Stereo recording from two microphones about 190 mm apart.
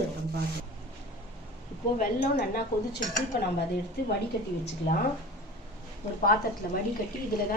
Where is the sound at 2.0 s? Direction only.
50° left (ahead or behind).